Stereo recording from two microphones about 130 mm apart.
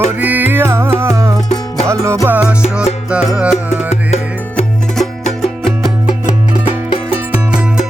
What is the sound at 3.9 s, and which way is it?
Music, 55° left (ahead or behind).